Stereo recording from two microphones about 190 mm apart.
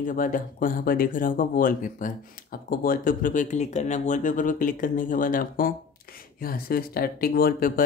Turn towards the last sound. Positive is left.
turn(degrees=50)  # may be behind; listen again after turning